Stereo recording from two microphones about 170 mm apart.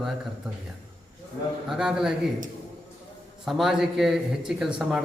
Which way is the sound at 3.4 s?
Centre (ahead or behind).